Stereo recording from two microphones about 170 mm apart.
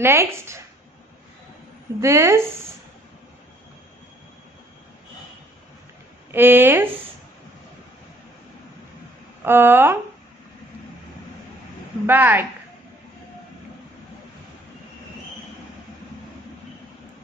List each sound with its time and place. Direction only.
0.0 s speech: 15° right (ahead or behind)
2.0 s speech: 15° right (ahead or behind)
6.3 s speech: 10° right (ahead or behind)
9.4 s speech: 15° right (ahead or behind)
12.1 s speech: 10° right (ahead or behind)